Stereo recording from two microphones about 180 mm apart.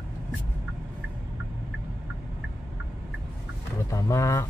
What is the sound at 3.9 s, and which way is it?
Speech, 15° left (ahead or behind).